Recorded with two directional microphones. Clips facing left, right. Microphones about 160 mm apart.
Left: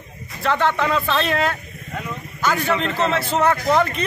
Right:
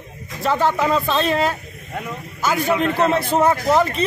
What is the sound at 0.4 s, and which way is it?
Speech, 10° right (ahead or behind).